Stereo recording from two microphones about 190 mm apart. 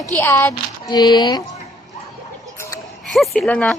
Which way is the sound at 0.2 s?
10° left (ahead or behind).